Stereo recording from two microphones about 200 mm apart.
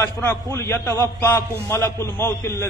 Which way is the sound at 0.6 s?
15° left (ahead or behind).